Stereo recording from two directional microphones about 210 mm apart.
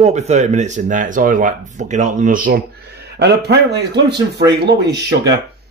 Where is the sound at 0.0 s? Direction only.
35° right (ahead or behind).